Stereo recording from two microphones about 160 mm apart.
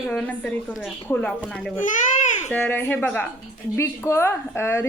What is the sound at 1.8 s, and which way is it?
Babbling, 50° left (ahead or behind).